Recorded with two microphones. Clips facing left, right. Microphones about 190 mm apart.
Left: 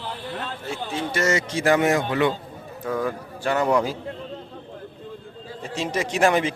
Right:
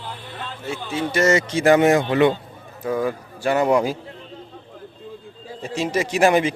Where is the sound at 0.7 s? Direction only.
5° right (ahead or behind).